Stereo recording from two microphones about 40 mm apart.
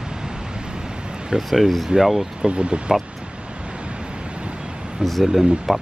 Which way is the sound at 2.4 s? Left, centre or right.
Right.